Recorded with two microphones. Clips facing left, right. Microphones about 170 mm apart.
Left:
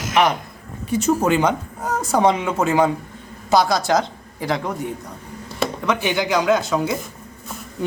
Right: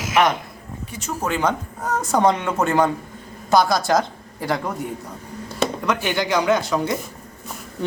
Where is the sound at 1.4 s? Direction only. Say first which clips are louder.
Left 1 dB; centre (ahead or behind).